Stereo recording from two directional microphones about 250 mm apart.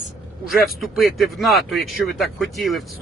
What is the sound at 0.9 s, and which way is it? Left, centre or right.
Speech, centre.